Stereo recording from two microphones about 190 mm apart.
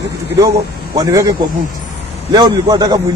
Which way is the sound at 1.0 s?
20° right (ahead or behind).